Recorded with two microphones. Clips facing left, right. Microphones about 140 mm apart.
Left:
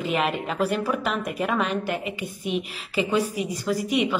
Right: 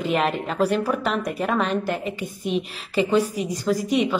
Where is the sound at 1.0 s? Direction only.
40° right (ahead or behind).